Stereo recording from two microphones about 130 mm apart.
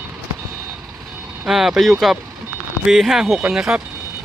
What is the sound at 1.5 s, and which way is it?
Speech, 5° right (ahead or behind).